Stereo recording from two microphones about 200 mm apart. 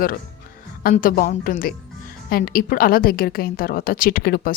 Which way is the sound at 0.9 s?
45° left (ahead or behind).